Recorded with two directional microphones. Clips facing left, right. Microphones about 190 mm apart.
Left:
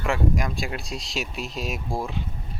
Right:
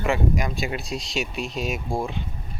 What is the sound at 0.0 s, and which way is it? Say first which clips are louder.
Speech: right 1 dB; centre (ahead or behind).